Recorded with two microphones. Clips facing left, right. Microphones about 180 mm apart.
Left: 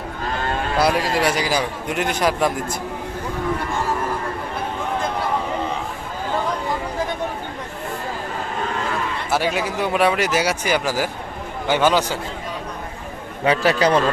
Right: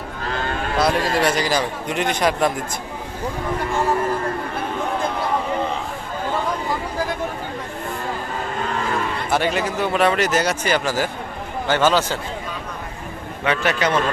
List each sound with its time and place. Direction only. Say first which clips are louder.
0.8 s speech: even; 10° left (ahead or behind)
9.3 s speech: right 1 dB; 5° left (ahead or behind)
13.4 s a man's voice: left 3 dB; 35° left (ahead or behind)